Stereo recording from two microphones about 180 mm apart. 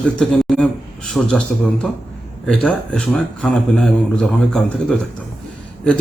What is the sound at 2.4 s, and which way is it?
Speech, 5° left (ahead or behind).